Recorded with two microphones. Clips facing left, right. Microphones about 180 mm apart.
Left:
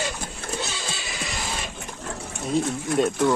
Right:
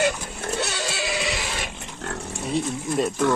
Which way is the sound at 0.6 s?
70° right (ahead or behind).